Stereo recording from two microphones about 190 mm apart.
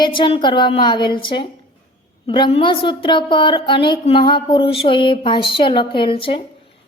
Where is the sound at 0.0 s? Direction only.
25° left (ahead or behind).